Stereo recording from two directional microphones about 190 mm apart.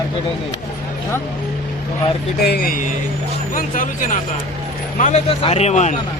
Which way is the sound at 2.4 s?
55° left (ahead or behind).